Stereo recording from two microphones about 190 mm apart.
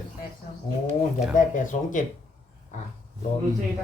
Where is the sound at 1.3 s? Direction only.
45° left (ahead or behind).